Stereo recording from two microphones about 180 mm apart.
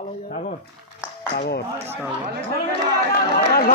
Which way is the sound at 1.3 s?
65° left (ahead or behind).